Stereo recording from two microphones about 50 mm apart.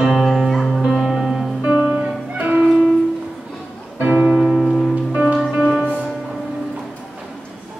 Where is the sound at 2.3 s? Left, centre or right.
Right.